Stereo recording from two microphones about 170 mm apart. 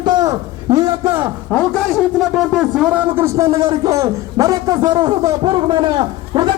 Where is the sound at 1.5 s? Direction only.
5° left (ahead or behind).